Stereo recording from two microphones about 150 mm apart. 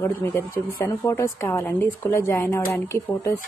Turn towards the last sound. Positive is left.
turn(degrees=15)  # may be behind; listen again after turning